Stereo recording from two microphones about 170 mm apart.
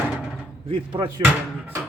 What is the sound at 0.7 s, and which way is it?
Speech, 30° right (ahead or behind).